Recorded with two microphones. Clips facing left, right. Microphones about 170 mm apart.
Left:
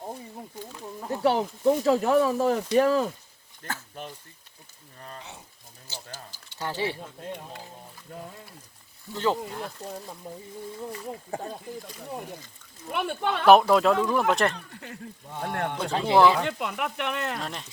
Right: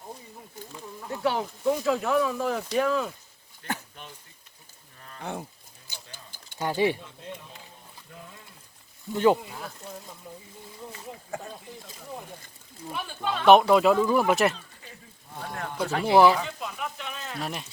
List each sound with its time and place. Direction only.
1.0 s speech: 35° left (ahead or behind)
5.2 s speech: 55° right (ahead or behind)
5.9 s a sound: 15° right (ahead or behind)
6.6 s speech: 15° right (ahead or behind)
8.1 s speech: 40° left (ahead or behind)
9.1 s speech: 15° right (ahead or behind)
9.5 s speech: centre (ahead or behind)
12.9 s speech: 65° left (ahead or behind)
13.5 s speech: centre (ahead or behind)
14.5 s speech: 70° left (ahead or behind)
15.9 s speech: 25° left (ahead or behind)
16.4 s speech: 70° left (ahead or behind)
17.4 s speech: 5° right (ahead or behind)